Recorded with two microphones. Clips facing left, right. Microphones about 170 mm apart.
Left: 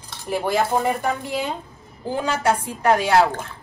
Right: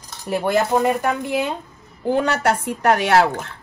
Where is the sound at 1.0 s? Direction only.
55° right (ahead or behind).